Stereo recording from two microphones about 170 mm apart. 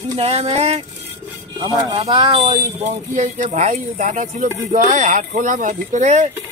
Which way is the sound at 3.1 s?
45° right (ahead or behind).